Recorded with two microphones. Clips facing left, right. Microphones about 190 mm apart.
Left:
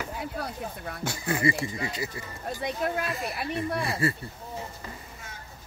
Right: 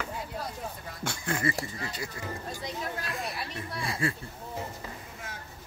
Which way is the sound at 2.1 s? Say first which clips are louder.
Left 2 dB; 60° left (ahead or behind).